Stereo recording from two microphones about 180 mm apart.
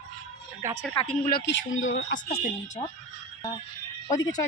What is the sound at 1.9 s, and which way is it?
Speech, 90° left.